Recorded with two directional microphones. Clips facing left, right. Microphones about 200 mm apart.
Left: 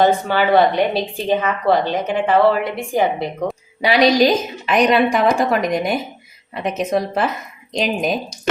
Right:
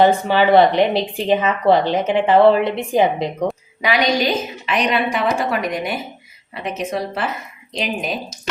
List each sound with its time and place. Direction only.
0.0 s speech: 20° right (ahead or behind)
3.8 s a woman's voice: 35° left (ahead or behind)